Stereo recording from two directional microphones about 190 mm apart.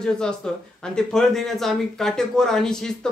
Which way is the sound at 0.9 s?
Centre (ahead or behind).